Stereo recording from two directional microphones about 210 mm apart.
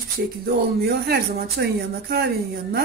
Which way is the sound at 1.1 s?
50° right (ahead or behind).